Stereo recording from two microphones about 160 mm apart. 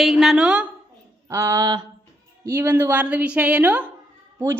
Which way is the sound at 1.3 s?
15° right (ahead or behind).